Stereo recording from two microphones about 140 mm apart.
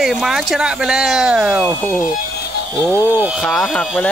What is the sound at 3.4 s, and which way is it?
Speech, centre (ahead or behind).